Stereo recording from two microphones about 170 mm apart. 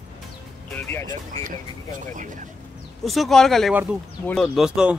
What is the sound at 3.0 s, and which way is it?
Speech, centre (ahead or behind).